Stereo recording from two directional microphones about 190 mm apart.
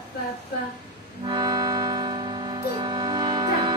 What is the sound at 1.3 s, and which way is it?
Music, 20° right (ahead or behind).